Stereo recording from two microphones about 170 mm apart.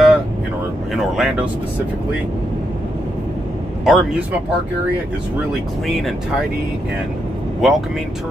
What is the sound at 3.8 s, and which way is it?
Speech, 5° right (ahead or behind).